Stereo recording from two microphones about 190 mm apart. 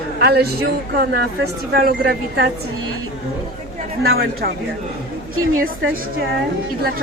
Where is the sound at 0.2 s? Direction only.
55° right (ahead or behind).